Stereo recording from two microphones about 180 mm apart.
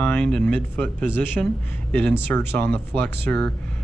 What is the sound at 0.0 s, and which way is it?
Speech, 5° left (ahead or behind).